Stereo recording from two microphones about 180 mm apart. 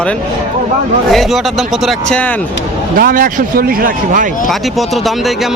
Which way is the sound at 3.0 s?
50° right (ahead or behind).